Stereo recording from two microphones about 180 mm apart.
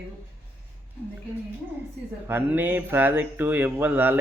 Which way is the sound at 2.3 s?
10° right (ahead or behind).